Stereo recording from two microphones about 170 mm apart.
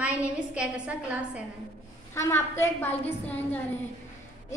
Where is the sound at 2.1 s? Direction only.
15° left (ahead or behind).